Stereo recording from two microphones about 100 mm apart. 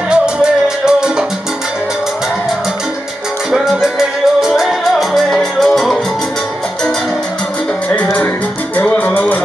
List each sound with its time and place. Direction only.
0.1 s music: 10° right (ahead or behind)
4.4 s salsa music: centre (ahead or behind)
7.9 s music: 15° left (ahead or behind)